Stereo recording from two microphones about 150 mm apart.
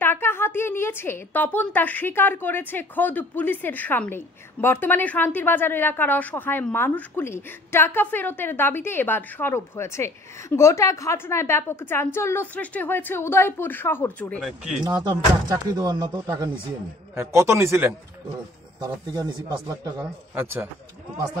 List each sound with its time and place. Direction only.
0.0 s a woman's voice: 15° left (ahead or behind)
14.4 s speech: 5° right (ahead or behind)
14.9 s speech: 25° right (ahead or behind)
17.1 s a man's voice: 20° right (ahead or behind)